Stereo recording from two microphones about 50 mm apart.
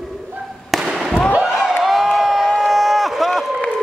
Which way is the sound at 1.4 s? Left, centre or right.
Centre.